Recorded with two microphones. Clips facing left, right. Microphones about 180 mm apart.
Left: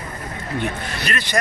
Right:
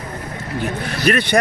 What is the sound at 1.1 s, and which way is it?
Speech, 60° right (ahead or behind).